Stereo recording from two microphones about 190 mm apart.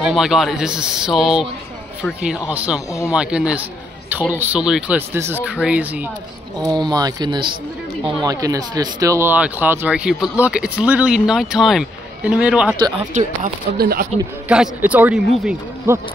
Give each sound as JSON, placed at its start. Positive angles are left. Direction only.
{"t": 0.0, "sound": "speech", "side_deg": 0}
{"t": 6.6, "sound": "speech", "side_deg": -20}
{"t": 12.7, "sound": "speech", "side_deg": -20}
{"t": 13.4, "sound": "speech", "side_deg": -50}
{"t": 14.5, "sound": "speech", "side_deg": -5}